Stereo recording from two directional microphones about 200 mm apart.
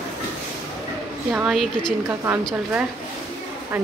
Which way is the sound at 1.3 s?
5° right (ahead or behind).